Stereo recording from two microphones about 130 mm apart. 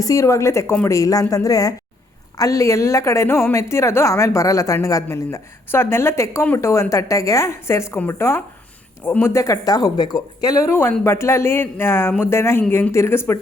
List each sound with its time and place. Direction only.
0.0 s a woman's voice: 25° left (ahead or behind)